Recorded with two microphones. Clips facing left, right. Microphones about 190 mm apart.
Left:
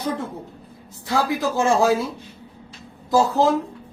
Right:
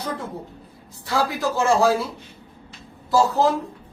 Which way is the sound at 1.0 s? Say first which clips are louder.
Left 1 dB; 20° left (ahead or behind).